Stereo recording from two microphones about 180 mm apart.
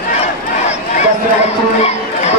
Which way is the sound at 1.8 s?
35° left (ahead or behind).